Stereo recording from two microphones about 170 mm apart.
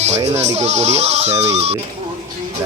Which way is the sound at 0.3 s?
40° right (ahead or behind).